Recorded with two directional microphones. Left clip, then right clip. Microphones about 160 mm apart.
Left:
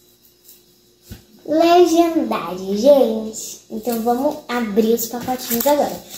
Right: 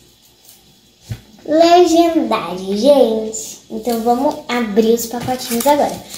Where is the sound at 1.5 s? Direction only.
Centre (ahead or behind).